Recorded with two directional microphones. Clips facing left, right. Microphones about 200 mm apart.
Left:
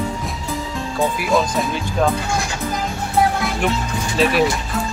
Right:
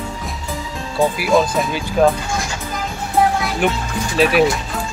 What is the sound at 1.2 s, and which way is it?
Speech, centre (ahead or behind).